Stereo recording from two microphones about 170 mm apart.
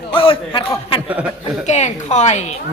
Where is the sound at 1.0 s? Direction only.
10° right (ahead or behind).